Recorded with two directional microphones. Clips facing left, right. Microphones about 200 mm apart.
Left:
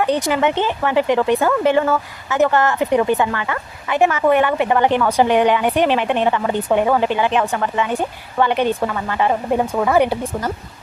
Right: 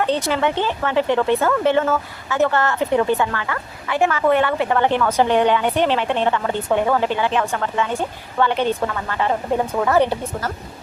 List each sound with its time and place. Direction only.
0.0 s speech: 15° left (ahead or behind)